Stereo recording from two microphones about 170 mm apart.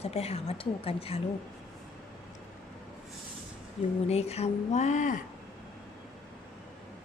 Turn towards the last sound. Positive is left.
turn(degrees=45)  # may be behind; listen again after turning